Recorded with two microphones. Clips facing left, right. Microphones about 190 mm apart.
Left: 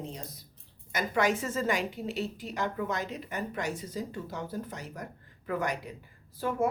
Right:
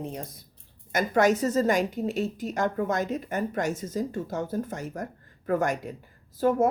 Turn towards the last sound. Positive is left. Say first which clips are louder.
# right 7 dB
turn(degrees=-45)  # may be behind; listen again after turning